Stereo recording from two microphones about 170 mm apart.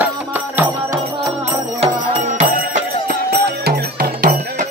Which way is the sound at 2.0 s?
45° right (ahead or behind).